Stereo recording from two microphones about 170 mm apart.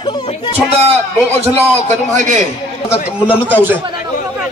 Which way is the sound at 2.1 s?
45° right (ahead or behind).